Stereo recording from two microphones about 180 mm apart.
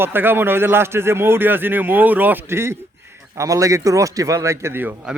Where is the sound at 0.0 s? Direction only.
10° right (ahead or behind).